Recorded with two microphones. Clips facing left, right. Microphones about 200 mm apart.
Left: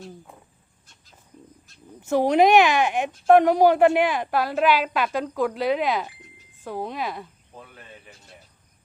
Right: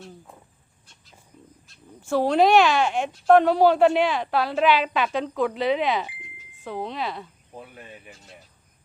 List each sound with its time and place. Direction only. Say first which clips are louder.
2.0 s a woman's voice: left 1 dB; 20° left (ahead or behind)
7.5 s cricket: right 4 dB; 15° right (ahead or behind)